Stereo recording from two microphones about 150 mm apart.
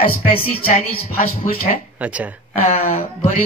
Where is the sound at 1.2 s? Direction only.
75° left (ahead or behind).